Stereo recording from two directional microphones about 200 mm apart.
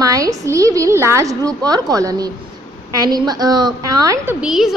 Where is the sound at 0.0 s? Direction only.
15° right (ahead or behind).